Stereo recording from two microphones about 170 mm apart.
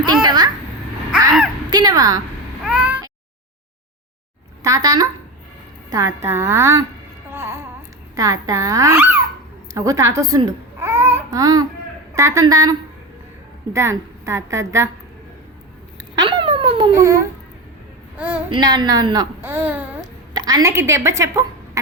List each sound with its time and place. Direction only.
0.0 s a child's voice: 25° right (ahead or behind)
1.7 s fowl: 25° right (ahead or behind)
2.6 s cat: 5° right (ahead or behind)
4.6 s a woman's voice: 20° right (ahead or behind)
7.3 s music: 15° right (ahead or behind)
8.1 s a child's voice: 20° right (ahead or behind)
13.7 s a woman's voice: 15° right (ahead or behind)
16.1 s a sound: 30° right (ahead or behind)
16.9 s a woman's voice: 15° right (ahead or behind)
18.5 s speech: 25° right (ahead or behind); by 20.0 s 10° right (ahead or behind)
20.0 s a woman's voice: 25° right (ahead or behind)